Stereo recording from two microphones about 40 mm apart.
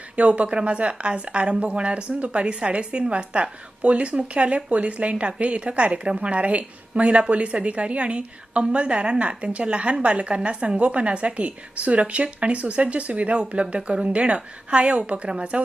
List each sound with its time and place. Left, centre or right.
0.2 s a woman's voice: right